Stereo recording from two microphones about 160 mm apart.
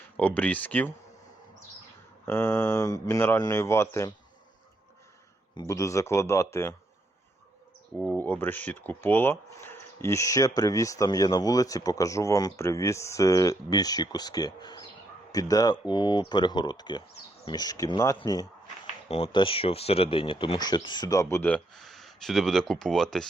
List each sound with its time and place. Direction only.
0.2 s speech: 10° left (ahead or behind)
2.2 s speech: 15° left (ahead or behind)
5.5 s speech: 20° left (ahead or behind)
8.0 s speech: 10° left (ahead or behind)
19.0 s speech: 35° left (ahead or behind); by 23.2 s 5° left (ahead or behind)